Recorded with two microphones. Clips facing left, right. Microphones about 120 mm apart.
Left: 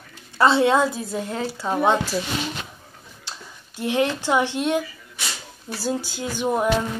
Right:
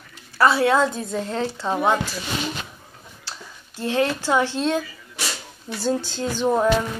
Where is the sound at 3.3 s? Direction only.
15° left (ahead or behind).